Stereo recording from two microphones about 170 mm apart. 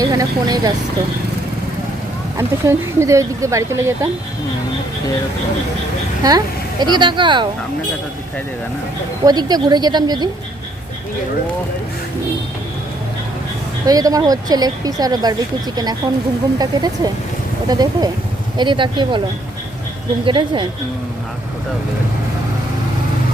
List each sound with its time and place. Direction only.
0.0 s speech: 20° right (ahead or behind)
2.4 s speech: 15° right (ahead or behind)
6.2 s speech: 25° right (ahead or behind)
9.2 s speech: 25° right (ahead or behind)
13.8 s speech: 20° right (ahead or behind)
20.2 s speech: 30° right (ahead or behind)